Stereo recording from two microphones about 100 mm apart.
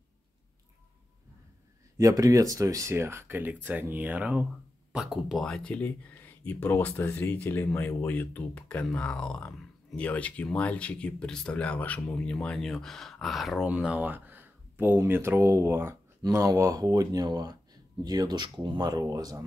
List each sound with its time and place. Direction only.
2.0 s speech: 35° right (ahead or behind); by 5.4 s 5° right (ahead or behind)
5.4 s speech: 10° left (ahead or behind)
14.0 s speech: 20° right (ahead or behind); by 19.4 s 35° right (ahead or behind)